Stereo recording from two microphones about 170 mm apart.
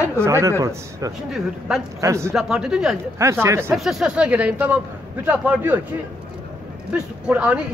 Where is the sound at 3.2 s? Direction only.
15° right (ahead or behind).